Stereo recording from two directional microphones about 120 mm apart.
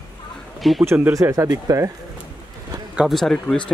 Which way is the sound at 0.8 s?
15° right (ahead or behind).